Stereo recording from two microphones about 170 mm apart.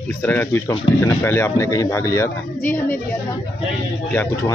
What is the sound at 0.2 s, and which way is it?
Speech, 10° left (ahead or behind).